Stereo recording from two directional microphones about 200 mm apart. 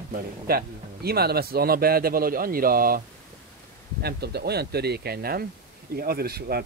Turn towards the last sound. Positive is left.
turn(degrees=-50)  # may be behind; listen again after turning